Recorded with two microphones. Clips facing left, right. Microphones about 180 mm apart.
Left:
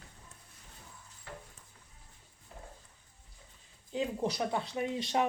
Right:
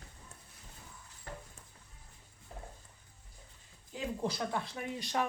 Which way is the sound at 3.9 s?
20° left (ahead or behind).